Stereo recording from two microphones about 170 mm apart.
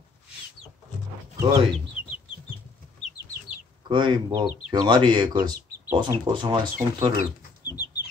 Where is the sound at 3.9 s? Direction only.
25° right (ahead or behind).